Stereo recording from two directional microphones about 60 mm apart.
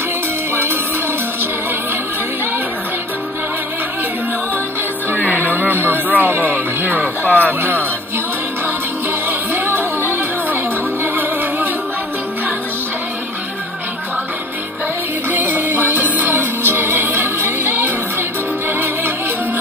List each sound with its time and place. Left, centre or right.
5.5 s music: right
6.3 s speech: right
9.5 s music: right
15.2 s music: right